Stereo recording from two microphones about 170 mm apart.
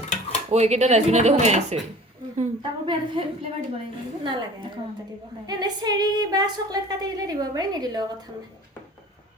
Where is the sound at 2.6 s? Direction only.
30° right (ahead or behind).